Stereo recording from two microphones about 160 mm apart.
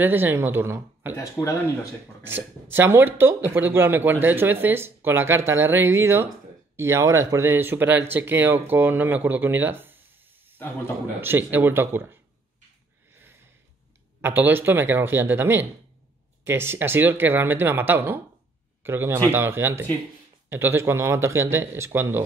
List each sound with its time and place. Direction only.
0.0 s speech: 15° right (ahead or behind)
2.2 s speech: 15° right (ahead or behind)
11.1 s speech: 15° right (ahead or behind)
13.1 s sniff: 15° right (ahead or behind)
14.2 s speech: 10° right (ahead or behind)